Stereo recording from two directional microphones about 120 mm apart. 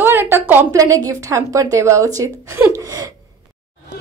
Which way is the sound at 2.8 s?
30° right (ahead or behind).